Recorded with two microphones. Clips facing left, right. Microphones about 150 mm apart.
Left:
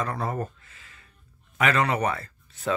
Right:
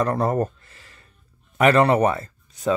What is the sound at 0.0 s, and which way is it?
Speech, 45° right (ahead or behind).